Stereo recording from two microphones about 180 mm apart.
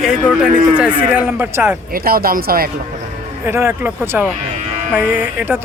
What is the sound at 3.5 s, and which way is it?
Speech, 15° right (ahead or behind).